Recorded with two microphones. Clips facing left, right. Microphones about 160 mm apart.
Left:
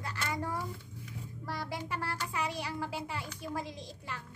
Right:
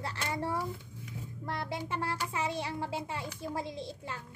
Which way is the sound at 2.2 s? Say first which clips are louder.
Right 2 dB; 25° right (ahead or behind).